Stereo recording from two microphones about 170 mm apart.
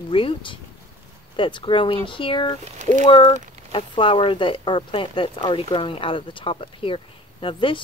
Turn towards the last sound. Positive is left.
turn(degrees=30)  # may be behind; listen again after turning